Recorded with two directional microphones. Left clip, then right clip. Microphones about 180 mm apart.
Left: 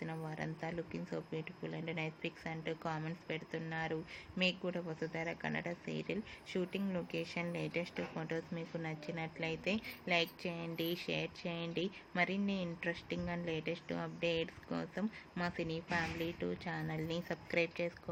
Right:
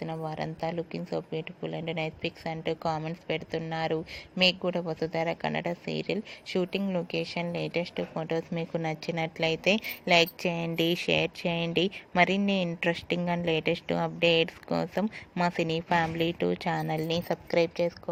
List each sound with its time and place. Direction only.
0.3 s a woman's voice: 30° right (ahead or behind)
17.5 s a woman's voice: 25° right (ahead or behind)